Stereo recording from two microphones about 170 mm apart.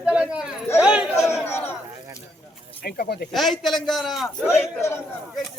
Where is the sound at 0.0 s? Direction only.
5° right (ahead or behind).